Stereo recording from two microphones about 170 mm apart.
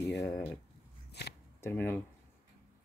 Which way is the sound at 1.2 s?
80° left.